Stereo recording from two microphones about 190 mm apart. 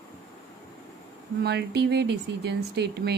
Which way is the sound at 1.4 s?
60° right (ahead or behind).